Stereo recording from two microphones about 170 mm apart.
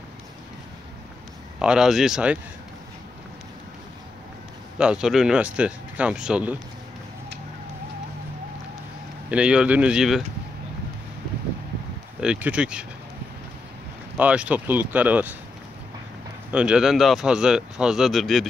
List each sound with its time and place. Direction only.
1.6 s speech: 5° right (ahead or behind)
4.7 s speech: 5° right (ahead or behind)
9.3 s speech: 5° right (ahead or behind)
12.2 s speech: 5° right (ahead or behind)
14.1 s speech: 10° right (ahead or behind)
16.4 s speech: 5° right (ahead or behind)